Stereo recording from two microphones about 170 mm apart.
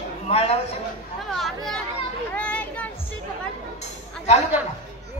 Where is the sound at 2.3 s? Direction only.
5° left (ahead or behind).